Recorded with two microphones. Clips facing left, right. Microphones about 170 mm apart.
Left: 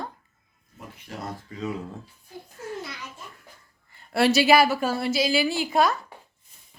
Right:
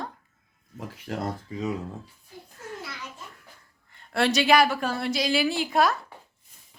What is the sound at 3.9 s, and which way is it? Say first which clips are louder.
A woman's voice: left 3 dB; 5° left (ahead or behind).